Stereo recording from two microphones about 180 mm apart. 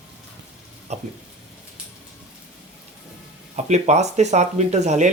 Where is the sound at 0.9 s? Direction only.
40° right (ahead or behind).